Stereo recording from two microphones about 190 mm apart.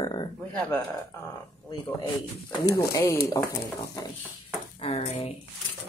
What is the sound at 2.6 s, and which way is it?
Speech, 15° left (ahead or behind).